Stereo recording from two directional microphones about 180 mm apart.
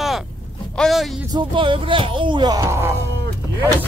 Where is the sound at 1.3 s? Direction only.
30° right (ahead or behind).